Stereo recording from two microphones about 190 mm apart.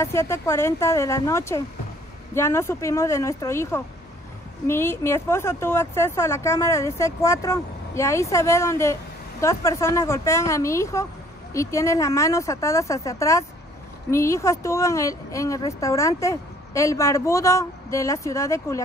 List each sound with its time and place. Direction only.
0.0 s speech: 15° left (ahead or behind)